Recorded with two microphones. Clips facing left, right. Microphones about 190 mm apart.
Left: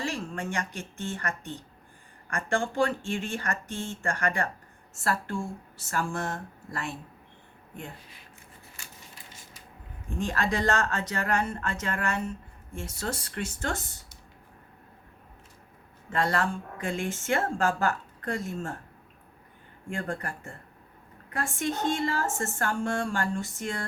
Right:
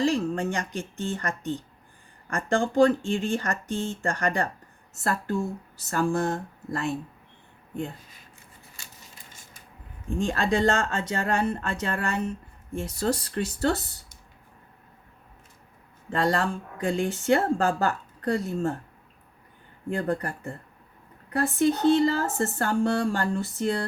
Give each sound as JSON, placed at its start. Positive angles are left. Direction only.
{"t": 0.0, "sound": "speech", "side_deg": -35}
{"t": 9.3, "sound": "a sound", "side_deg": -50}
{"t": 10.2, "sound": "speech", "side_deg": -30}
{"t": 16.0, "sound": "speech", "side_deg": -35}
{"t": 21.3, "sound": "speech", "side_deg": -35}